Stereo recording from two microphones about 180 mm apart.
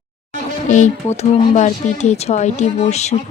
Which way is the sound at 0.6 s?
40° left (ahead or behind).